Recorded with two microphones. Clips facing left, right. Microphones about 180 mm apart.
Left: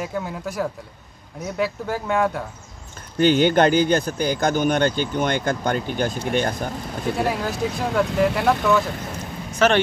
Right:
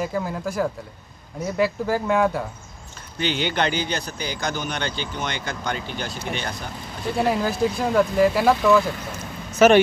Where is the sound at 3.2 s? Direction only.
45° left (ahead or behind).